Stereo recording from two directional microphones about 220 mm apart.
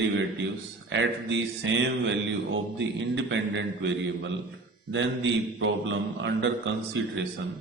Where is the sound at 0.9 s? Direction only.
55° right (ahead or behind).